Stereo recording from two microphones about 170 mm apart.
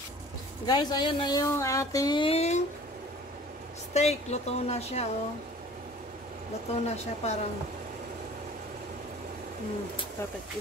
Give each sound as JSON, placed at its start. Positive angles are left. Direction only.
{"t": 0.7, "sound": "speech", "side_deg": 25}
{"t": 3.9, "sound": "speech", "side_deg": 40}
{"t": 6.7, "sound": "speech", "side_deg": 40}